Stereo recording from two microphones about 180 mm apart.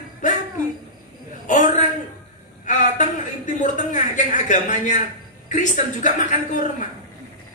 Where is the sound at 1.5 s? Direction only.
45° left (ahead or behind).